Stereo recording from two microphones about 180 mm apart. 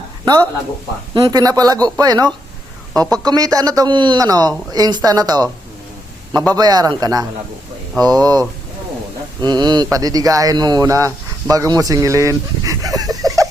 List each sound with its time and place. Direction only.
1.1 s speech: 20° right (ahead or behind)
6.5 s speech: 20° right (ahead or behind)